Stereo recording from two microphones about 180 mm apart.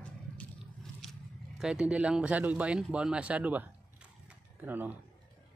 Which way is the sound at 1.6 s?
5° right (ahead or behind).